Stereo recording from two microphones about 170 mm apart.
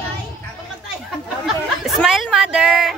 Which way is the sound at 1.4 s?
Centre (ahead or behind).